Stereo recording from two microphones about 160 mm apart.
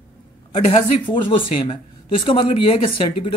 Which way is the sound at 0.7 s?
30° left (ahead or behind).